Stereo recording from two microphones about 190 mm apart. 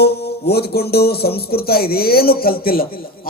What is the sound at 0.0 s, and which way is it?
Music, 60° left (ahead or behind).